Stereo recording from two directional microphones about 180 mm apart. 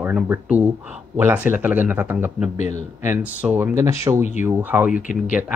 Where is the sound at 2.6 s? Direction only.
40° left (ahead or behind).